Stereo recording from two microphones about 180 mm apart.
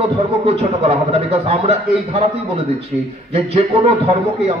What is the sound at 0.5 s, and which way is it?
A man's voice, 35° right (ahead or behind).